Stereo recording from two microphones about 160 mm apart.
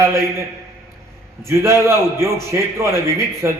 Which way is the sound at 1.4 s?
15° right (ahead or behind).